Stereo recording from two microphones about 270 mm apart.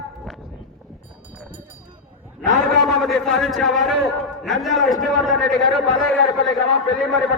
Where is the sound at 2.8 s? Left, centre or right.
Centre.